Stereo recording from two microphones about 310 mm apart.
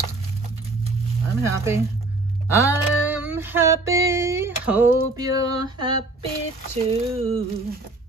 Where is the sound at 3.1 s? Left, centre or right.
Centre.